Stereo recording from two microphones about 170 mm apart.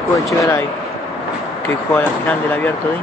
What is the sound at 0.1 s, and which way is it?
Speech, 20° left (ahead or behind).